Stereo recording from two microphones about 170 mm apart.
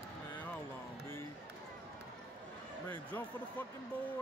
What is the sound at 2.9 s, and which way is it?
Speech, 10° left (ahead or behind).